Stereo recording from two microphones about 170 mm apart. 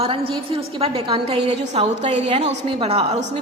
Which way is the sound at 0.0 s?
35° right (ahead or behind).